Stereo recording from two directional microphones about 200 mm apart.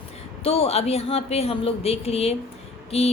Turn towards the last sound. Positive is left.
turn(degrees=30)  # may be behind; listen again after turning